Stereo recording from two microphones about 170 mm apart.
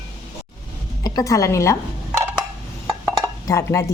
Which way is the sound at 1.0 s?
20° left (ahead or behind).